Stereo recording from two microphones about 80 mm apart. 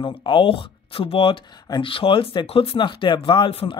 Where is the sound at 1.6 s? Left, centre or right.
Left.